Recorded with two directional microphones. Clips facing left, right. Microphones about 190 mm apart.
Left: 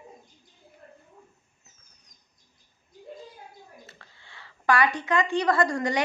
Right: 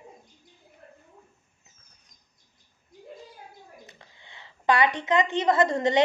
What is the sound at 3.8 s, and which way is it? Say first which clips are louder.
A woman's voice: right 1 dB; 20° right (ahead or behind).